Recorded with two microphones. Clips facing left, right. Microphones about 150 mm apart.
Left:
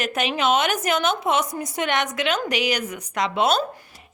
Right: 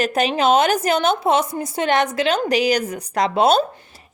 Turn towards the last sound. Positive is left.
turn(degrees=-35)  # may be behind; listen again after turning